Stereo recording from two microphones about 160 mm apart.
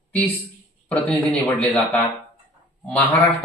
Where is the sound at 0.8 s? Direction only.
10° left (ahead or behind).